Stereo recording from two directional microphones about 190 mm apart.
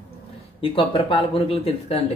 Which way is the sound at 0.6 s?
25° left (ahead or behind).